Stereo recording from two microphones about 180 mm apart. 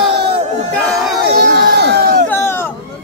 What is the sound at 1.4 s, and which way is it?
Crowd, 55° right (ahead or behind).